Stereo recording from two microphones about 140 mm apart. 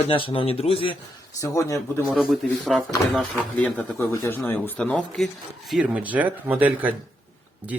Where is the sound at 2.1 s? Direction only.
Centre (ahead or behind).